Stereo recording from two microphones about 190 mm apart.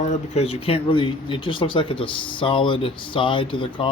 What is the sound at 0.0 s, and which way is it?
Speech, 35° left (ahead or behind).